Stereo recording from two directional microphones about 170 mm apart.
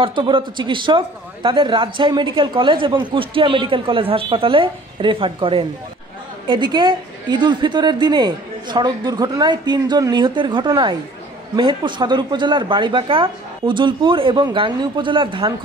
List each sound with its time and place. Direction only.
0.0 s a woman's voice: 30° right (ahead or behind)